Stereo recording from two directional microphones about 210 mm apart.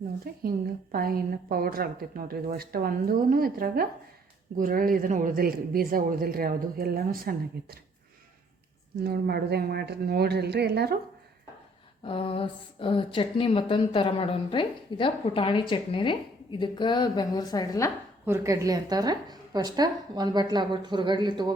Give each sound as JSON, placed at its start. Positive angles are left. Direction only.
{"t": 0.4, "sound": "a woman's voice", "side_deg": -45}
{"t": 9.0, "sound": "a woman's voice", "side_deg": -50}
{"t": 12.0, "sound": "a woman's voice", "side_deg": 25}
{"t": 18.3, "sound": "a woman's voice", "side_deg": -15}